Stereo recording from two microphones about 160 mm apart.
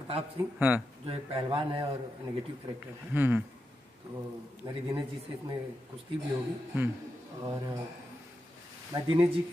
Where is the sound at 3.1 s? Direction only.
10° right (ahead or behind).